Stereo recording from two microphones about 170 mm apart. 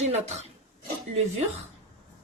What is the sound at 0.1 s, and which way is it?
Speech, 40° right (ahead or behind).